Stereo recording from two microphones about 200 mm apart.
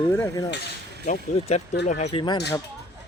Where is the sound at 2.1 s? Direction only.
20° left (ahead or behind).